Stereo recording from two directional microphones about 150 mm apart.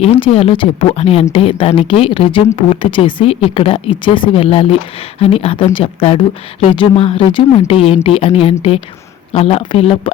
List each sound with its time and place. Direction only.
0.0 s speech: 40° left (ahead or behind)